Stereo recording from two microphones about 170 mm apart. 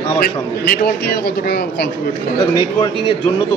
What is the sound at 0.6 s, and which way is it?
Speech, 70° left (ahead or behind).